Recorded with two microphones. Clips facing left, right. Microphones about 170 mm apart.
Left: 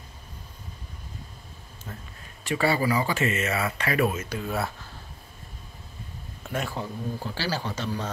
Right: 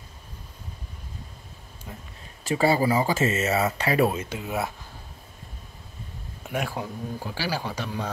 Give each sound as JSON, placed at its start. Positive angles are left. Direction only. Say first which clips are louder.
{"t": 1.9, "sound": "speech", "louder": "even", "side_deg": -15}
{"t": 2.5, "sound": "speech", "louder": "right 3 dB", "side_deg": -25}
{"t": 4.4, "sound": "speech", "louder": "even", "side_deg": -15}
{"t": 6.5, "sound": "speech", "louder": "right 1 dB", "side_deg": -10}